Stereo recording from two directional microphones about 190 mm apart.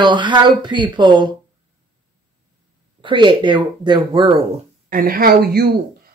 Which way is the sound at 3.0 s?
25° right (ahead or behind).